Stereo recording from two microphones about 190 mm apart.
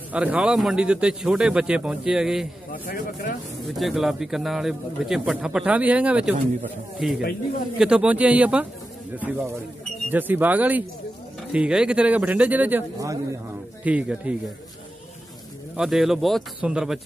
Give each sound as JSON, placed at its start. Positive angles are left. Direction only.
{"t": 0.1, "sound": "speech", "side_deg": -5}
{"t": 2.7, "sound": "speech", "side_deg": 45}
{"t": 3.6, "sound": "a man's voice", "side_deg": 0}
{"t": 13.8, "sound": "a man's voice", "side_deg": -5}
{"t": 15.7, "sound": "speech", "side_deg": 0}